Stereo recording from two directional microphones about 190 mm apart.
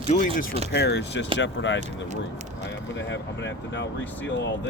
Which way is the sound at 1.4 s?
75° left (ahead or behind).